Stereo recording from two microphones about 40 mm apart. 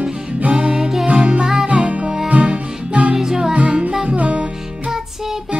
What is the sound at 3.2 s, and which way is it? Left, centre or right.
Music, centre.